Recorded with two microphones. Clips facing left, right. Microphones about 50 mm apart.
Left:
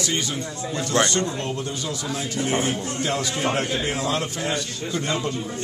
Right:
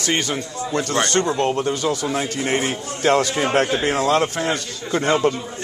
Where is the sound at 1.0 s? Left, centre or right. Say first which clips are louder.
Right 5 dB; right.